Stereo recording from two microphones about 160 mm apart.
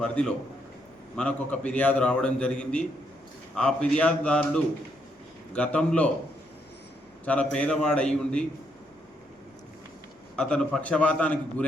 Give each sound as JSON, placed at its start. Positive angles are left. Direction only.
{"t": 0.0, "sound": "a man's voice", "side_deg": 5}
{"t": 7.5, "sound": "a man's voice", "side_deg": 5}
{"t": 10.3, "sound": "a man's voice", "side_deg": 5}